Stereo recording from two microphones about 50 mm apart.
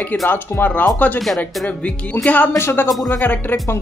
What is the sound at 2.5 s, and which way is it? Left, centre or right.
Speech, left.